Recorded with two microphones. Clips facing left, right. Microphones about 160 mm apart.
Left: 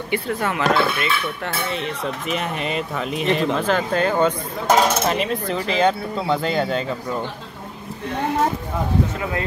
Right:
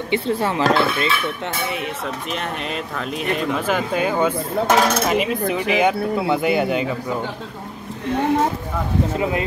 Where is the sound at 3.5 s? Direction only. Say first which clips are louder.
Left 1 dB; 10° right (ahead or behind).